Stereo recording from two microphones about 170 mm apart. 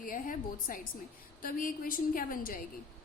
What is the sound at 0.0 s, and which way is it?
A woman's voice, 55° left (ahead or behind).